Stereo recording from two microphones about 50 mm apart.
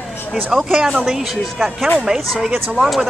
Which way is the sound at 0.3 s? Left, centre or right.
Centre.